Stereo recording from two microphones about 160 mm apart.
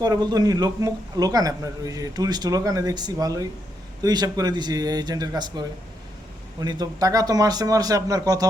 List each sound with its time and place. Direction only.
0.3 s a man's voice: 25° right (ahead or behind)